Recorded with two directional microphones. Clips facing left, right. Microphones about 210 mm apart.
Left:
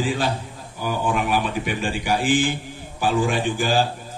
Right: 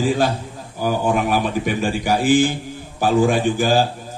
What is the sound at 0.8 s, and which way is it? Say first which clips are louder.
A man's voice: right 4 dB; 45° right (ahead or behind).